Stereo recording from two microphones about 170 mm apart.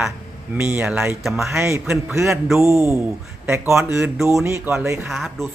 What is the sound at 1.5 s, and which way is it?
A man's voice, 15° right (ahead or behind).